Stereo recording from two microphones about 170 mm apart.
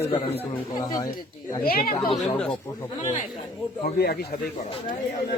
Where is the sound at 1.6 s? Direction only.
60° left (ahead or behind).